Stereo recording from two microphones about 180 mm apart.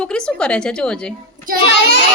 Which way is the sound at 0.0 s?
5° left (ahead or behind).